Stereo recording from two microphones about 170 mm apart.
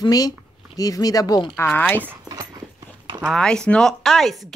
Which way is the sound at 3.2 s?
5° left (ahead or behind).